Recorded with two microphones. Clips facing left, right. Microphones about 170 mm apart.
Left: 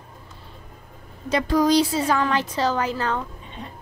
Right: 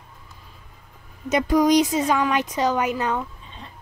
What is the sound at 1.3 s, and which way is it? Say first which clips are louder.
A woman's voice: right 1 dB; 15° right (ahead or behind).